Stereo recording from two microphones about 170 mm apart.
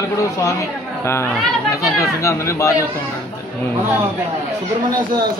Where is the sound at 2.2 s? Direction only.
15° left (ahead or behind).